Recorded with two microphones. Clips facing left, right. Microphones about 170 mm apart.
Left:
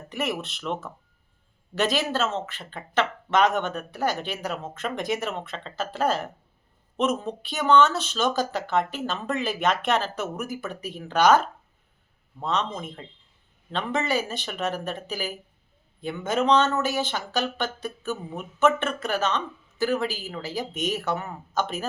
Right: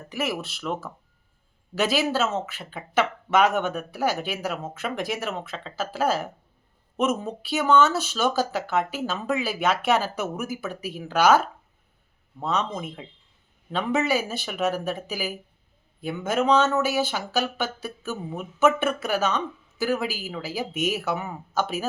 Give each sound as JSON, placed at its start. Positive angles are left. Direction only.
{"t": 0.1, "sound": "speech", "side_deg": -5}